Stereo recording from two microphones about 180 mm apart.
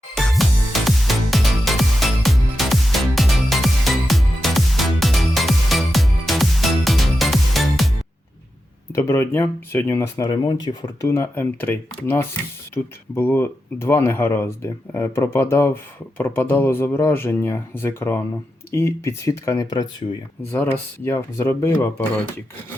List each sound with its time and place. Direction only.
0.2 s music: centre (ahead or behind)
8.9 s speech: 15° left (ahead or behind)
11.1 s speech: 15° left (ahead or behind)